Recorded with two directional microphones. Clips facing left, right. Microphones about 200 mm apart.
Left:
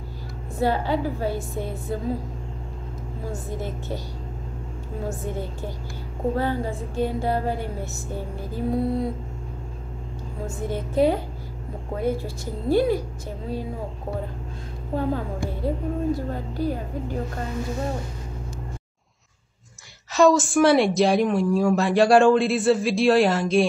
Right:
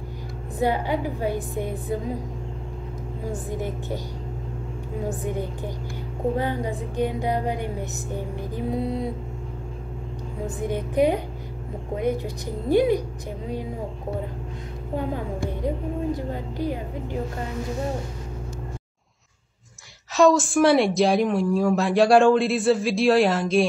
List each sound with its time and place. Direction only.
0.6 s speech: 15° right (ahead or behind)
3.3 s speech: 15° right (ahead or behind)
5.0 s speech: 15° right (ahead or behind)
10.4 s a woman's voice: 15° right (ahead or behind)
15.0 s a woman's voice: 20° right (ahead or behind)
20.2 s a woman's voice: centre (ahead or behind)